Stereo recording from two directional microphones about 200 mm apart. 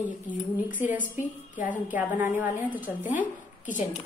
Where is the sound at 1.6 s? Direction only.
10° right (ahead or behind).